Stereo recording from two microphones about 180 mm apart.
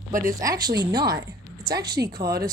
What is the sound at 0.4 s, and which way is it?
A woman's voice, 20° right (ahead or behind).